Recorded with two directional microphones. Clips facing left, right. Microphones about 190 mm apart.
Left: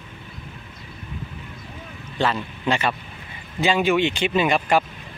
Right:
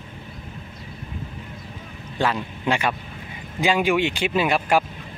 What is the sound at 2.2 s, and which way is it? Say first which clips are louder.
Speech: even; 10° right (ahead or behind).